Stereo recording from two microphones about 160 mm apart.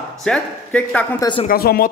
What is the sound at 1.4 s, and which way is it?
Speech, 70° left (ahead or behind).